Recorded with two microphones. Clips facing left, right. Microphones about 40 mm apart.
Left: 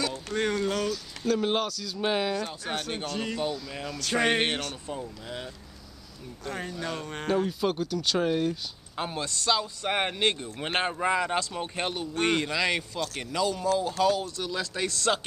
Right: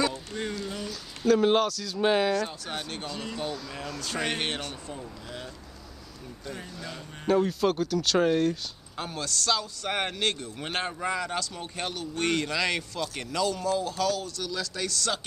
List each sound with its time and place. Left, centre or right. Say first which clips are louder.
0.3 s speech: left 6 dB; left
0.7 s a sound: left 7 dB; left
1.2 s speech: right 5 dB; centre
2.7 s a man's voice: left 3 dB; centre
3.3 s speech: left 2 dB; centre
4.1 s a man's voice: left 6 dB; left
6.8 s music: left 7 dB; left
7.2 s speech: right 3 dB; centre
8.9 s a man's voice: left 1 dB; left